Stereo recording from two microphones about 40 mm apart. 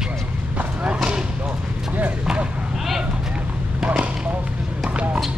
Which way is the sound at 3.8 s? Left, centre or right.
Right.